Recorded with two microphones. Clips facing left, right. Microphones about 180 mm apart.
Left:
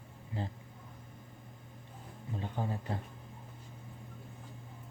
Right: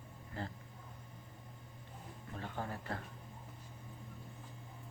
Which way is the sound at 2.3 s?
15° left (ahead or behind).